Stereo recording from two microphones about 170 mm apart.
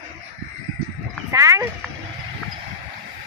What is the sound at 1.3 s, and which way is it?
Speech, 20° right (ahead or behind).